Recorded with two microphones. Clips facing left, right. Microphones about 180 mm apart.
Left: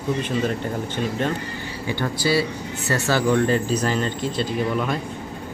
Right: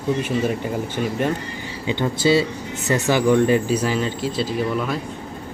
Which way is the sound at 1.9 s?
20° right (ahead or behind).